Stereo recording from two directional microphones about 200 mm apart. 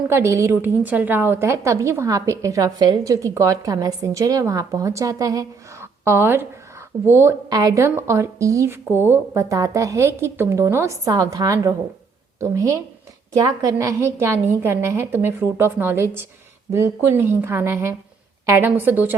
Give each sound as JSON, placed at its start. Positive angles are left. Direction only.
{"t": 0.1, "sound": "a woman's voice", "side_deg": -15}